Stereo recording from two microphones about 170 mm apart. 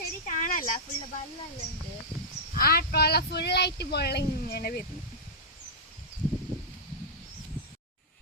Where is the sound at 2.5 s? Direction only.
60° left (ahead or behind).